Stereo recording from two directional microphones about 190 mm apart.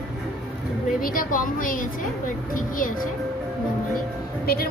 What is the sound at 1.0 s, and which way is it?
A woman's voice, 45° left (ahead or behind).